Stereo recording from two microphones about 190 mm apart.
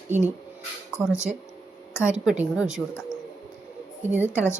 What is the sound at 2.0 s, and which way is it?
Speech, 5° right (ahead or behind).